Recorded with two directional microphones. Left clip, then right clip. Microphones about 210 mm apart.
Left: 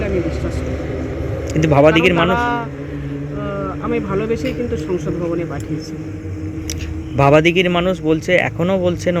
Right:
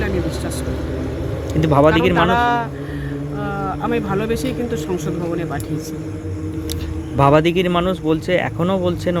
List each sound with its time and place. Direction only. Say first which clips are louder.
1.6 s speech: left 2 dB; 5° right (ahead or behind)
2.4 s vehicle: right 2 dB; 20° right (ahead or behind)
3.8 s a man's voice: left 1 dB; 20° right (ahead or behind)
7.2 s speech: left 2 dB; 5° right (ahead or behind)